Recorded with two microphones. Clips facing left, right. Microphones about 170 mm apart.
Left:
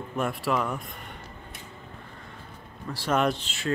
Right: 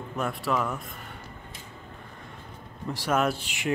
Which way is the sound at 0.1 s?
Centre (ahead or behind).